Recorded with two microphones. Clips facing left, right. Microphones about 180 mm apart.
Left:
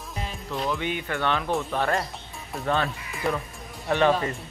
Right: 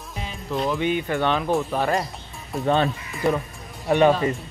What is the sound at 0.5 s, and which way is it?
Speech, 20° right (ahead or behind).